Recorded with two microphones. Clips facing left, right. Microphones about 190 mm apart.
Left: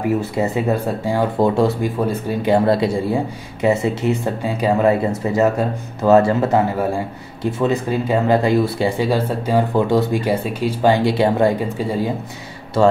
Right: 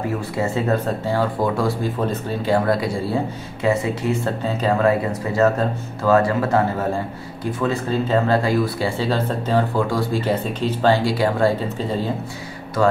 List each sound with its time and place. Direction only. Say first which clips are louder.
0.4 s speech: left 2 dB; 15° left (ahead or behind)